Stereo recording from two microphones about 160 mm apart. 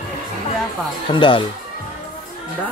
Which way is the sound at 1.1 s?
30° left (ahead or behind).